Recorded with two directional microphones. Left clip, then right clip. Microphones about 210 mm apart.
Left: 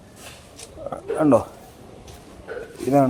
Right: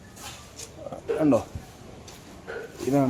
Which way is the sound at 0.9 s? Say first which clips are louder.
Left 5 dB; 15° left (ahead or behind).